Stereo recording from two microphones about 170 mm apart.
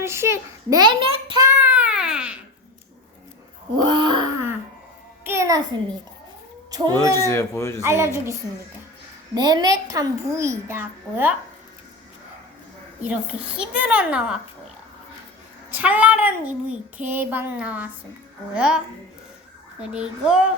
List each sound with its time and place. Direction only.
0.0 s a child's voice: 15° right (ahead or behind); by 1.4 s 30° right (ahead or behind)
1.6 s baby cry: 10° right (ahead or behind)
3.8 s wail: 25° right (ahead or behind)
5.2 s music: 15° right (ahead or behind)
6.7 s speech: 20° right (ahead or behind)
7.3 s a man's voice: 15° left (ahead or behind)
7.8 s child singing: 15° right (ahead or behind)
9.3 s a child's voice: 25° right (ahead or behind)
13.1 s child singing: 5° right (ahead or behind)
15.7 s child singing: 10° right (ahead or behind)
18.5 s a child's voice: 5° right (ahead or behind)
19.8 s a child's voice: 5° right (ahead or behind)